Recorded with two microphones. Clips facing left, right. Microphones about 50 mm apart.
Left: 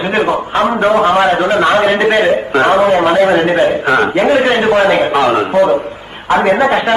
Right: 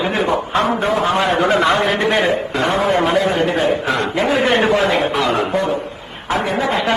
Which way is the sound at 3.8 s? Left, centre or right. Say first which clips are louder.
Left 7 dB; left.